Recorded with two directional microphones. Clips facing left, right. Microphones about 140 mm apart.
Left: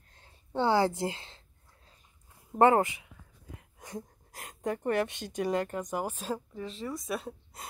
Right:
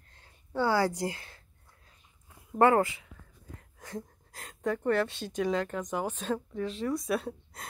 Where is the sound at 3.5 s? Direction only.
20° left (ahead or behind).